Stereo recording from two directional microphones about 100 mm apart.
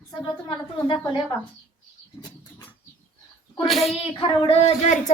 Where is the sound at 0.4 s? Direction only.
60° left (ahead or behind).